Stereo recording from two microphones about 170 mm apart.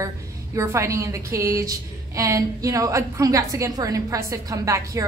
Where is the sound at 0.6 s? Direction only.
15° right (ahead or behind).